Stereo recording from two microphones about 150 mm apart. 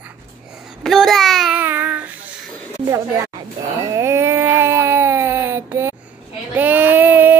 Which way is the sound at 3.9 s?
20° right (ahead or behind).